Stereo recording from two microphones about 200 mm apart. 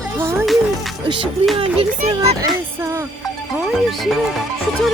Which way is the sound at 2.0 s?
30° right (ahead or behind).